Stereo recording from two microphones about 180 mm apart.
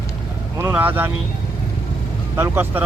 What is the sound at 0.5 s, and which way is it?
Speech, 10° right (ahead or behind).